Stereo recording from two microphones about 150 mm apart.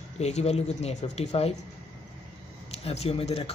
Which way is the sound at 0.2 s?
45° left (ahead or behind).